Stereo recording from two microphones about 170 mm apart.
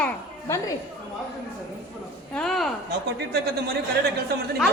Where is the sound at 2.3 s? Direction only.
5° left (ahead or behind).